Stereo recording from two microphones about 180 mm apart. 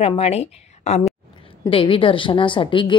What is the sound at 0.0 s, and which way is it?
A woman's voice, 35° left (ahead or behind).